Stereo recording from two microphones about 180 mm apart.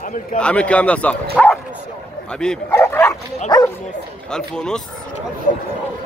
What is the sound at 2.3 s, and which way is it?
Bow-wow, 5° left (ahead or behind).